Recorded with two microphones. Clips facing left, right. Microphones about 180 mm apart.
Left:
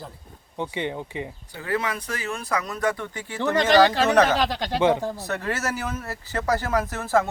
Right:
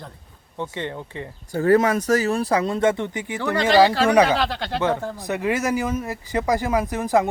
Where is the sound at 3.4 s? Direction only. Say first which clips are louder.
Left 1 dB; 20° left (ahead or behind).